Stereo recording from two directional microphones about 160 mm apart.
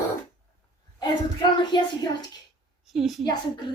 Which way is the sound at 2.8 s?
Centre (ahead or behind).